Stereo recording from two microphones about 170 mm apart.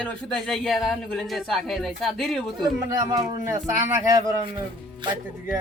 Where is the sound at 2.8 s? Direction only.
20° right (ahead or behind).